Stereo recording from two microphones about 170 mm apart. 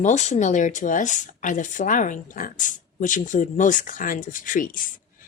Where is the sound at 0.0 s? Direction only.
45° left (ahead or behind).